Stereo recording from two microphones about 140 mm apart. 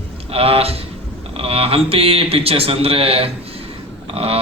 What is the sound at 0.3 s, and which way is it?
A man's voice, 40° right (ahead or behind).